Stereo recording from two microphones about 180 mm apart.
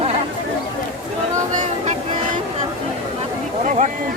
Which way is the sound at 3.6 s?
45° right (ahead or behind).